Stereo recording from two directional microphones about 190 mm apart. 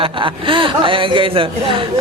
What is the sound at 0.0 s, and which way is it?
Speech, 25° right (ahead or behind).